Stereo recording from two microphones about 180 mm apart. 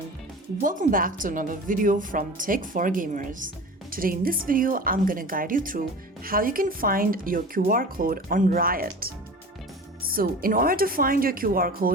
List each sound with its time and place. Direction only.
0.6 s speech: 45° right (ahead or behind)